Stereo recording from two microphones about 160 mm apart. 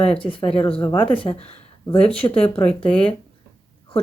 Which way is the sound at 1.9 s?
5° left (ahead or behind).